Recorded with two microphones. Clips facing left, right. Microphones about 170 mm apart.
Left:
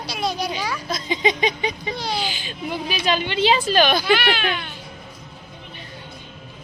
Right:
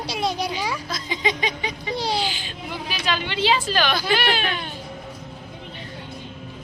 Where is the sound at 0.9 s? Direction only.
20° left (ahead or behind).